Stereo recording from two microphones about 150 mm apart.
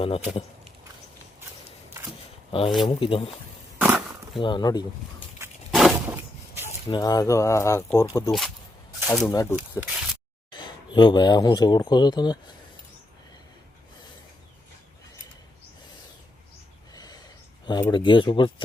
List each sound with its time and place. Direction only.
0.0 s speech: 40° left (ahead or behind)
2.5 s speech: 35° left (ahead or behind)
3.8 s a sound: 10° right (ahead or behind)
4.4 s speech: 30° left (ahead or behind)
5.7 s a sound: 5° right (ahead or behind)
6.8 s speech: 30° left (ahead or behind)
8.3 s speech: centre (ahead or behind)
9.3 s speech: 25° left (ahead or behind)
9.8 s speech: 5° right (ahead or behind)
10.5 s speech: 30° left (ahead or behind)
16.9 s gasp: 25° left (ahead or behind)
17.7 s speech: 30° left (ahead or behind)